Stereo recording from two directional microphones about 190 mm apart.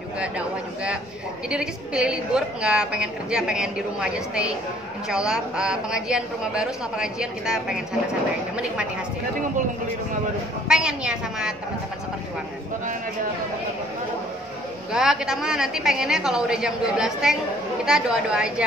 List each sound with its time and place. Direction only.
1.5 s a woman's voice: 5° right (ahead or behind)
10.7 s a woman's voice: 5° right (ahead or behind)
14.9 s a woman's voice: 5° right (ahead or behind)